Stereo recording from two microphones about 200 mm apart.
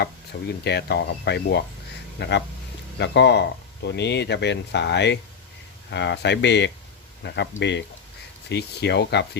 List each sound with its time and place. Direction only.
0.0 s speech: 55° left (ahead or behind)